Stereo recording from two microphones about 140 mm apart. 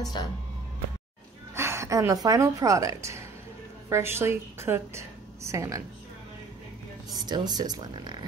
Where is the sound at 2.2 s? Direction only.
25° right (ahead or behind).